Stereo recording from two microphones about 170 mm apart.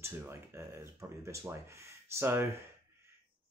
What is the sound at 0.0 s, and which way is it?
Speech, 15° right (ahead or behind).